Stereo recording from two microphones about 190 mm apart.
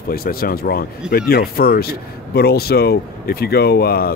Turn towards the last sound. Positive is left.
turn(degrees=55)  # may be behind; listen again after turning